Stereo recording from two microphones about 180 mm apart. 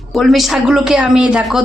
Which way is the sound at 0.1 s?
Centre (ahead or behind).